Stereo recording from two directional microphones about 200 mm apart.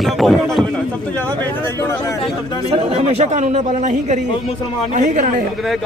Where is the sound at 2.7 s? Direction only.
30° right (ahead or behind).